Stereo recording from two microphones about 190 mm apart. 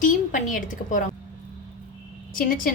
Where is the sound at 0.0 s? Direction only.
40° left (ahead or behind).